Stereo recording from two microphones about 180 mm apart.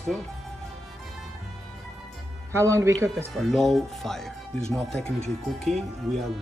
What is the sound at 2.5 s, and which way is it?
Speech, 15° right (ahead or behind).